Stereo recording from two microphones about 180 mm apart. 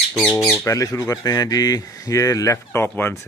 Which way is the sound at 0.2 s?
5° left (ahead or behind).